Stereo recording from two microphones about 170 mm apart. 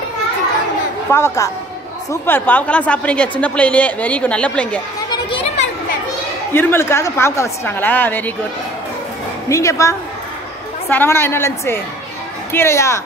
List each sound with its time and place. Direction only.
1.1 s a woman's voice: 15° left (ahead or behind)
5.1 s children playing: 30° left (ahead or behind)
6.5 s a woman's voice: 10° left (ahead or behind)
9.5 s a woman's voice: 20° left (ahead or behind)